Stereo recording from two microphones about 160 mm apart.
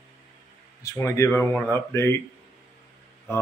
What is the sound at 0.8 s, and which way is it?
Speech, 20° left (ahead or behind).